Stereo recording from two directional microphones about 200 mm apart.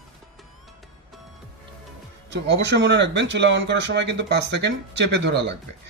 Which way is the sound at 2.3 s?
60° right (ahead or behind).